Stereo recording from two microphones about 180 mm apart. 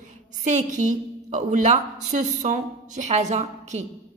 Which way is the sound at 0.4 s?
45° right (ahead or behind).